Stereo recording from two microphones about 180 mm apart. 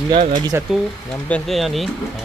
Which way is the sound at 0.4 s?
20° right (ahead or behind).